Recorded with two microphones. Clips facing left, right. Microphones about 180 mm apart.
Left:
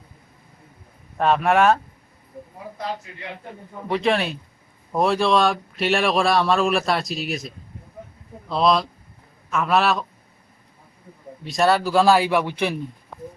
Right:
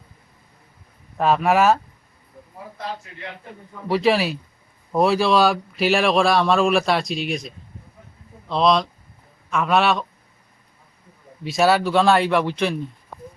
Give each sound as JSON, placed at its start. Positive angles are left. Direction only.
{"t": 1.2, "sound": "a man's voice", "side_deg": 0}
{"t": 3.8, "sound": "a man's voice", "side_deg": -5}
{"t": 11.4, "sound": "a man's voice", "side_deg": 0}